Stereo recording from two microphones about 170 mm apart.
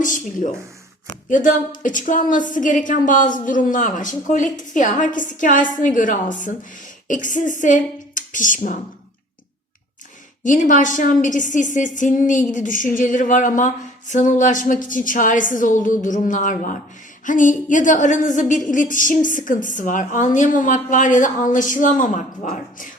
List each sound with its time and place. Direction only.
0.0 s a sound: 50° left (ahead or behind)
1.3 s a woman's voice: 50° left (ahead or behind)
10.4 s a woman's voice: 50° left (ahead or behind)